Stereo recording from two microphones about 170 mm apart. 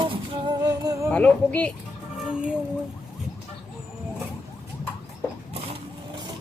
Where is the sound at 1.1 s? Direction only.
10° left (ahead or behind).